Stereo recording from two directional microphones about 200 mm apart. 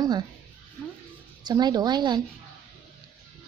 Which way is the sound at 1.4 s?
20° right (ahead or behind).